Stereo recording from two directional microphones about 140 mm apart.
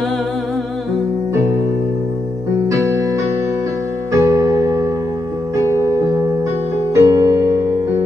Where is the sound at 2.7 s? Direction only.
20° right (ahead or behind).